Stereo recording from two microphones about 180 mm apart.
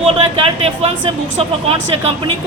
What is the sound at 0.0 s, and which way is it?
Speech, 30° right (ahead or behind).